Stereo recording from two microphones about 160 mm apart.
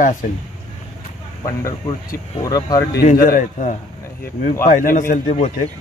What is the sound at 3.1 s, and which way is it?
A man's voice, 60° left (ahead or behind).